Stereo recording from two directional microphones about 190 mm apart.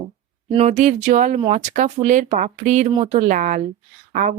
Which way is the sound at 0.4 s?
30° right (ahead or behind).